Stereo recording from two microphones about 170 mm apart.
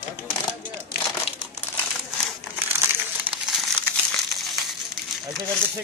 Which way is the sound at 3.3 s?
30° right (ahead or behind).